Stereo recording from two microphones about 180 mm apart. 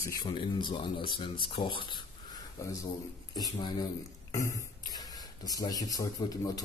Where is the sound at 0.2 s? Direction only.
25° left (ahead or behind).